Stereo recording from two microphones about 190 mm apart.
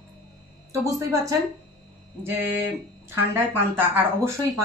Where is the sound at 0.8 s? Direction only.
15° right (ahead or behind).